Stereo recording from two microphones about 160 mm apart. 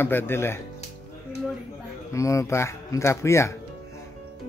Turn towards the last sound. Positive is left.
turn(degrees=15)  # may be behind; listen again after turning